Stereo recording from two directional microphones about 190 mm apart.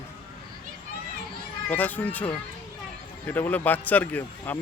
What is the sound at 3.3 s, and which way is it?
Speech, 10° left (ahead or behind).